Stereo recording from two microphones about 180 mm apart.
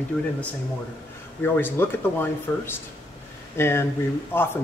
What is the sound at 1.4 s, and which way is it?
Speech, 10° left (ahead or behind).